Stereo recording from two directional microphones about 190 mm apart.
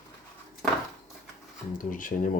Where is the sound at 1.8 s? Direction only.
45° left (ahead or behind).